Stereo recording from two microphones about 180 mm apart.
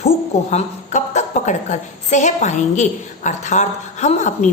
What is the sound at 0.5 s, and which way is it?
A woman's voice, 40° left (ahead or behind).